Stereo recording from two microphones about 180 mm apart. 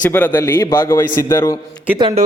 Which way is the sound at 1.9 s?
25° right (ahead or behind).